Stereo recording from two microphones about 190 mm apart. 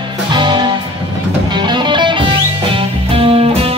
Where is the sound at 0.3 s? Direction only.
25° right (ahead or behind).